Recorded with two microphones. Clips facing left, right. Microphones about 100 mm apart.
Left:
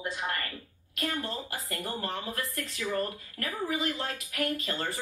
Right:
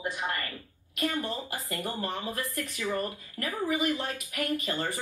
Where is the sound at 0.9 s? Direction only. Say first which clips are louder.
Right 3 dB; 15° right (ahead or behind).